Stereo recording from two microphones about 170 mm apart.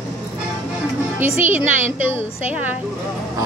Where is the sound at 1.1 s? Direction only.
10° right (ahead or behind).